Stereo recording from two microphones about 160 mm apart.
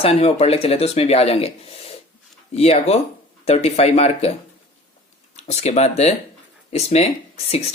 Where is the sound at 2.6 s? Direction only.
40° left (ahead or behind).